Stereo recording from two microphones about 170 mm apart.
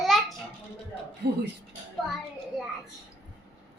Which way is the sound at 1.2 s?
75° right (ahead or behind).